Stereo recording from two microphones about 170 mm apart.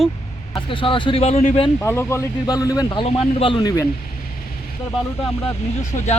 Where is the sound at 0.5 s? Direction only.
30° left (ahead or behind).